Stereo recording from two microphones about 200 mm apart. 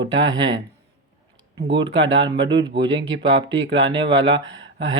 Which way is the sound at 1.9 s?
70° right (ahead or behind).